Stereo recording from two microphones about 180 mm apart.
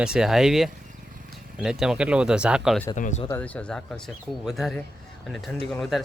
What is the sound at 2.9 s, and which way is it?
Speech, 40° left (ahead or behind).